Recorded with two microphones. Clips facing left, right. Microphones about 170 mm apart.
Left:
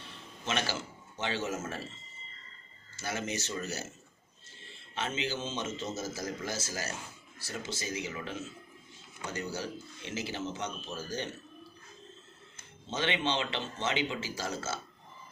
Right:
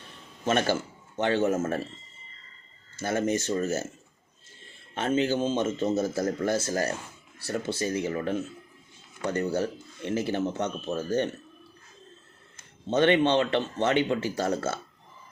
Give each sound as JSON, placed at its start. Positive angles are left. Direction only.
{"t": 0.4, "sound": "a man's voice", "side_deg": -50}
{"t": 2.9, "sound": "speech", "side_deg": -55}
{"t": 4.9, "sound": "speech", "side_deg": -50}
{"t": 12.9, "sound": "speech", "side_deg": -55}